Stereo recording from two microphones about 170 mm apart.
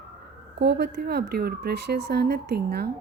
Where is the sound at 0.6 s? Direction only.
85° right.